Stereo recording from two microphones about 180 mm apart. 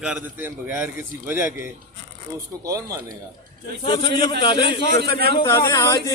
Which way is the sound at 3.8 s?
25° left (ahead or behind).